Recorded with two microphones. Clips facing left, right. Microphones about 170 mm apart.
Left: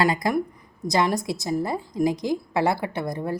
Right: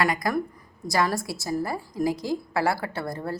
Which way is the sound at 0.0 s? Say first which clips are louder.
Left 3 dB; 25° left (ahead or behind).